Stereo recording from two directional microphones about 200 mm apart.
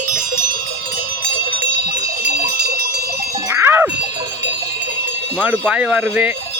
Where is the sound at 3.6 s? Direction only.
10° right (ahead or behind).